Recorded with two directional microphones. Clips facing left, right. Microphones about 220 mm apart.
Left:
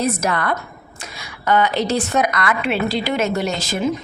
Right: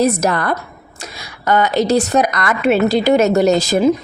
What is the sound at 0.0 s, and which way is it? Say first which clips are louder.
A woman's voice: right 5 dB; 40° right (ahead or behind).